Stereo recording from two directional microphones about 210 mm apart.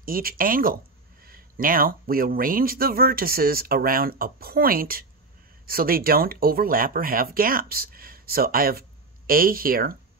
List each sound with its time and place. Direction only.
0.0 s speech: 45° right (ahead or behind)